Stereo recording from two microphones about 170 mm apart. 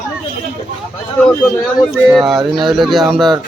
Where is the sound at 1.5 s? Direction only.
Centre (ahead or behind).